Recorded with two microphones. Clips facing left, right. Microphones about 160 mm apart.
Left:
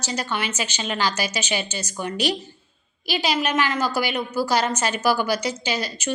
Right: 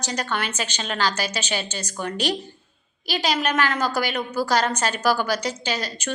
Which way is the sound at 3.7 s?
5° left (ahead or behind).